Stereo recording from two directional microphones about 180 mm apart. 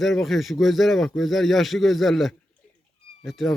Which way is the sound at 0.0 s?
Centre (ahead or behind).